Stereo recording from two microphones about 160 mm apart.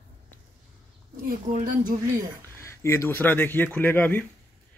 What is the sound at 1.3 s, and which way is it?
Speech, 55° right (ahead or behind).